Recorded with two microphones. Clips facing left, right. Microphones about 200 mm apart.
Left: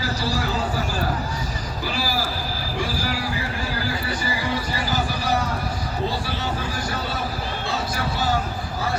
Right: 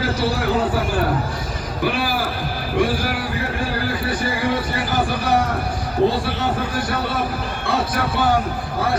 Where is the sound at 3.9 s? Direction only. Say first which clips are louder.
Right 4 dB; 55° right (ahead or behind).